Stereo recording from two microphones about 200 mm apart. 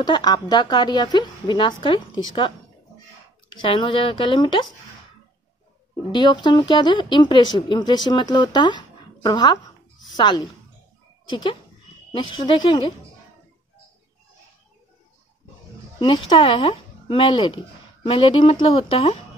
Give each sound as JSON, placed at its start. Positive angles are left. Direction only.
{"t": 0.0, "sound": "speech", "side_deg": 20}
{"t": 3.6, "sound": "speech", "side_deg": 25}
{"t": 6.1, "sound": "a woman's voice", "side_deg": 20}
{"t": 16.0, "sound": "speech", "side_deg": 25}